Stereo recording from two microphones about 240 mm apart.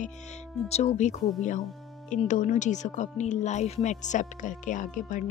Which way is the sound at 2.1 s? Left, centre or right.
Left.